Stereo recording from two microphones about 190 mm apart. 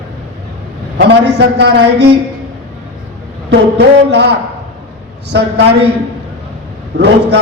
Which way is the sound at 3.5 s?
65° right (ahead or behind).